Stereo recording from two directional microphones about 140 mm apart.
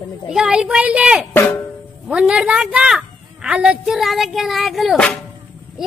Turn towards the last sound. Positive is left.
turn(degrees=5)  # may be behind; listen again after turning